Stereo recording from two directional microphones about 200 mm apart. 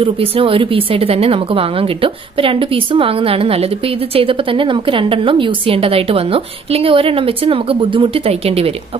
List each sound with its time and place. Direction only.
0.0 s a woman's voice: 25° right (ahead or behind)